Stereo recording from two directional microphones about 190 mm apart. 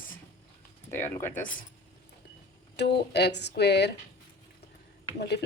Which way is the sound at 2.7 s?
65° left (ahead or behind).